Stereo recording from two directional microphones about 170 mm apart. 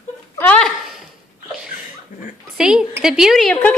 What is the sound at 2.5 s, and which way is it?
A woman's voice, 5° right (ahead or behind).